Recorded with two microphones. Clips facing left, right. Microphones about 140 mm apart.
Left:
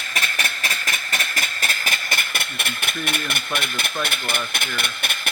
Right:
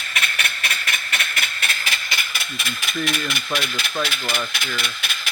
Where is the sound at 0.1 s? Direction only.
40° left (ahead or behind); by 3.9 s 55° left (ahead or behind).